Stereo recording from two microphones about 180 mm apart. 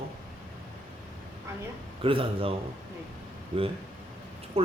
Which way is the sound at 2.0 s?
30° right (ahead or behind).